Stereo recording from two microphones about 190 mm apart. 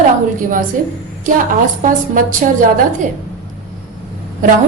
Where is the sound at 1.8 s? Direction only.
45° right (ahead or behind).